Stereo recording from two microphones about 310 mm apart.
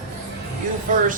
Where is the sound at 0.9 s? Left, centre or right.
Right.